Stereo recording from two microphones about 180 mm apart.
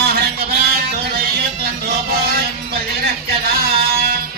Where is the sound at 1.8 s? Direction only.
60° right (ahead or behind).